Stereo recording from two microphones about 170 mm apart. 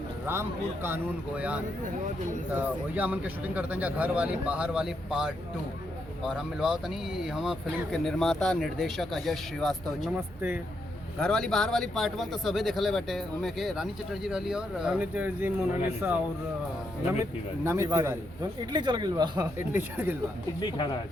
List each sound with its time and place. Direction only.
0.3 s speech: 15° right (ahead or behind); by 10.1 s centre (ahead or behind)
10.2 s speech: 10° right (ahead or behind)
11.2 s speech: 5° left (ahead or behind)
17.6 s a man's voice: 15° right (ahead or behind)
19.5 s speech: 10° right (ahead or behind)
20.6 s speech: 25° left (ahead or behind)